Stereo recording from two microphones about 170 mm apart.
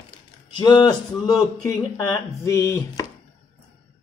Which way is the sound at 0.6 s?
25° left (ahead or behind).